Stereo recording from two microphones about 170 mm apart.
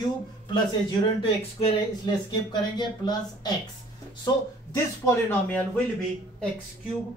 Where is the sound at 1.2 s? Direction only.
30° left (ahead or behind).